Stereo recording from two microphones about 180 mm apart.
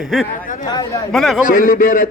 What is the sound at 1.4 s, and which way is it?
Speech, 50° left (ahead or behind).